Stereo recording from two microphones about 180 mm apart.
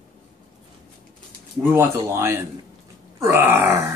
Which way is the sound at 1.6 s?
10° right (ahead or behind).